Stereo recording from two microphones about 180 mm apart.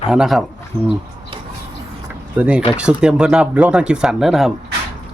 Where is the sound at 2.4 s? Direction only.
5° right (ahead or behind).